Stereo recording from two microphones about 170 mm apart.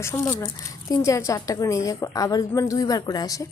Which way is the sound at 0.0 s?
15° left (ahead or behind).